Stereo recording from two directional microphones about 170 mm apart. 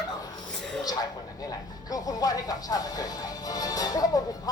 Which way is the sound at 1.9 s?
20° left (ahead or behind).